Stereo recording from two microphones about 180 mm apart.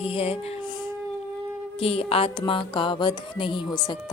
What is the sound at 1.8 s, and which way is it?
A woman's voice, 30° left (ahead or behind).